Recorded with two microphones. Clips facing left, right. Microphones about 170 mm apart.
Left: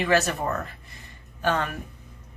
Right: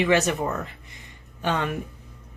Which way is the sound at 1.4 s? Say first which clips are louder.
Even; 20° right (ahead or behind).